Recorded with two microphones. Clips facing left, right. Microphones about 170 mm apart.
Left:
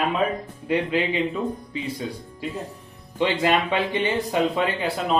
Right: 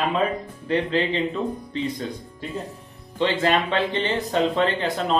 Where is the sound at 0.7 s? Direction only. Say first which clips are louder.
Even; 10° left (ahead or behind).